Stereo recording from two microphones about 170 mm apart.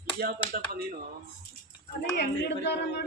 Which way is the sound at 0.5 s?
60° right (ahead or behind).